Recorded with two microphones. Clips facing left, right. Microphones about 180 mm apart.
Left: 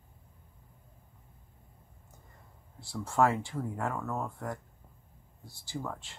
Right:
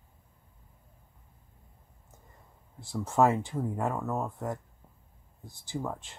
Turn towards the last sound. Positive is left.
turn(degrees=-15)  # may be behind; listen again after turning